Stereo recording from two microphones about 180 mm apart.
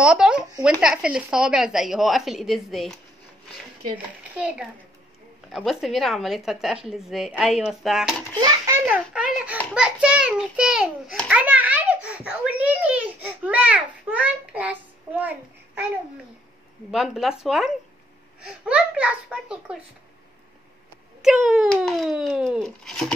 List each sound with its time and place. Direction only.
0.0 s speech: 5° right (ahead or behind)
4.2 s a child's voice: 5° right (ahead or behind)
8.4 s a child's voice: 20° right (ahead or behind)
8.8 s a child's voice: 5° right (ahead or behind)
16.9 s a child's voice: centre (ahead or behind)
21.2 s speech: 5° right (ahead or behind)